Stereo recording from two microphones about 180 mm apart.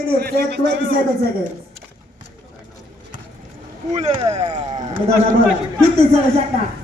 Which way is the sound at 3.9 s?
40° right (ahead or behind).